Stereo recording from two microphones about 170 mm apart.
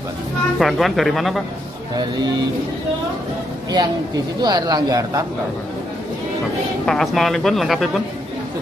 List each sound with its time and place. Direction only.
0.6 s speech: centre (ahead or behind)
2.0 s speech: 25° right (ahead or behind)
3.7 s speech: 25° right (ahead or behind)
6.9 s speech: centre (ahead or behind)